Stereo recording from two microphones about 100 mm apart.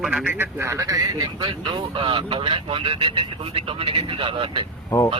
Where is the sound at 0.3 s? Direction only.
25° right (ahead or behind).